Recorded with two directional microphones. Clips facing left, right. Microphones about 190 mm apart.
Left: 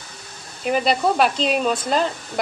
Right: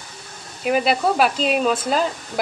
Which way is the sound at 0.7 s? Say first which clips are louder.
Right 1 dB; 5° right (ahead or behind).